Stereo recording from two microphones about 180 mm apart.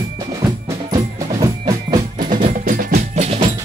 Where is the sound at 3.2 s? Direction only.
35° right (ahead or behind).